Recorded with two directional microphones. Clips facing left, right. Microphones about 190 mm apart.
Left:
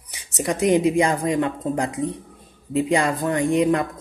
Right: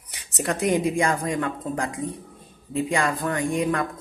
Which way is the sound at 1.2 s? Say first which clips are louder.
Left 5 dB; 20° left (ahead or behind).